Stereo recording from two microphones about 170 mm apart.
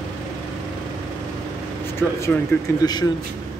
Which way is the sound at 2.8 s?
20° left (ahead or behind).